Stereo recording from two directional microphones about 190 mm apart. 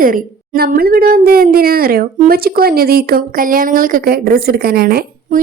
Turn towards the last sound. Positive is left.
turn(degrees=-50)  # may be behind; listen again after turning